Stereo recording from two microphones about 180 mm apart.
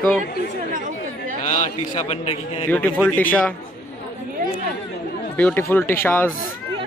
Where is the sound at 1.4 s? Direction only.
40° left (ahead or behind).